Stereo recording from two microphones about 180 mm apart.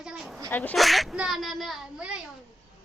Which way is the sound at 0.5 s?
10° left (ahead or behind).